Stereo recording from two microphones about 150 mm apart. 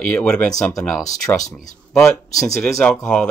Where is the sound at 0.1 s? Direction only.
10° left (ahead or behind).